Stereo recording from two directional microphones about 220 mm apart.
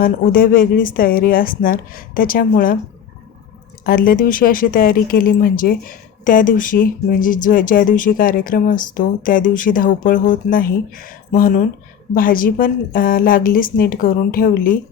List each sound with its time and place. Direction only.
0.0 s speech: 40° left (ahead or behind)
3.8 s speech: 40° left (ahead or behind)